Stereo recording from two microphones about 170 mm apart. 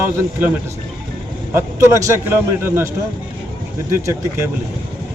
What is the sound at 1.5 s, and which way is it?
A man's voice, 15° right (ahead or behind).